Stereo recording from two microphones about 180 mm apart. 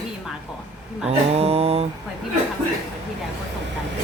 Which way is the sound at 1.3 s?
35° right (ahead or behind).